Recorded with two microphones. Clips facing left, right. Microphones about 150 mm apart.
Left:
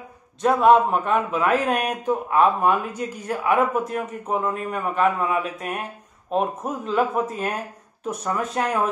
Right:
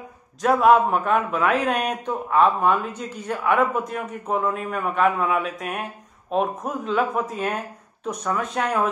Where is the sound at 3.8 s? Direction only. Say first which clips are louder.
Left 2 dB; 35° left (ahead or behind).